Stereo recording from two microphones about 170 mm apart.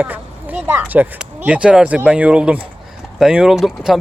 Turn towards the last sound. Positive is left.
turn(degrees=0)  # may be behind; listen again after turning